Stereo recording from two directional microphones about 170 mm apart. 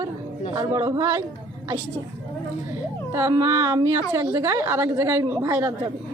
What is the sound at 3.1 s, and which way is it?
A woman's voice, 15° right (ahead or behind).